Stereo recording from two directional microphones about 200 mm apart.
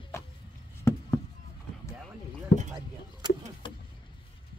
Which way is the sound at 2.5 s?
55° left (ahead or behind).